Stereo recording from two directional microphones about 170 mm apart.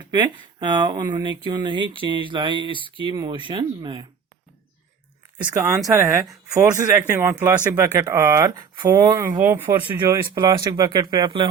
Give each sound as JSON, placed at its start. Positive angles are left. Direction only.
{"t": 0.0, "sound": "speech", "side_deg": -30}
{"t": 5.9, "sound": "speech", "side_deg": -15}
{"t": 9.3, "sound": "speech", "side_deg": -10}
{"t": 10.1, "sound": "speech", "side_deg": -20}